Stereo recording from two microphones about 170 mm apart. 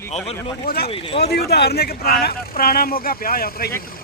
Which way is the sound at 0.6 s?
60° left (ahead or behind).